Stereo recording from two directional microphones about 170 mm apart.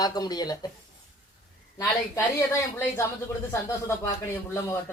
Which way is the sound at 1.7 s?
15° left (ahead or behind).